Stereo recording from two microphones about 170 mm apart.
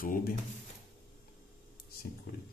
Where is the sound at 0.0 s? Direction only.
55° left (ahead or behind).